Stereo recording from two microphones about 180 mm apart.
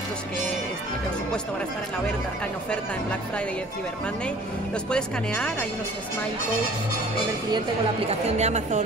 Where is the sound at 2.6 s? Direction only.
5° left (ahead or behind).